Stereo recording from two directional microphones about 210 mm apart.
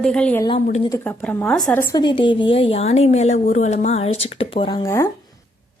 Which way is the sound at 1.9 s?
20° left (ahead or behind).